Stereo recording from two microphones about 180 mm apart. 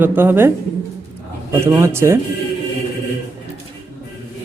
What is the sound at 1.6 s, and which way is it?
Speech, 15° right (ahead or behind).